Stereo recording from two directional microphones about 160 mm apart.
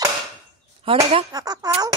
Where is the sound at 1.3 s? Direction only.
25° right (ahead or behind).